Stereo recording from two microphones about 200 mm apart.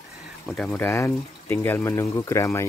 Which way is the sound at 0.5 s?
Centre (ahead or behind).